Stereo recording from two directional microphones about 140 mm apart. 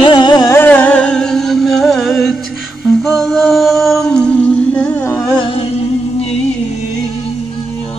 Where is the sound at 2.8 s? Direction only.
5° left (ahead or behind).